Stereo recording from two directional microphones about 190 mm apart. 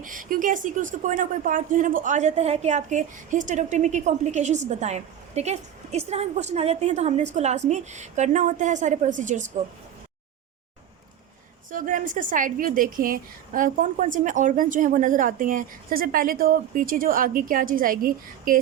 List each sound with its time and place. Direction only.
0.0 s speech: 45° right (ahead or behind)
11.7 s a woman's voice: 45° right (ahead or behind)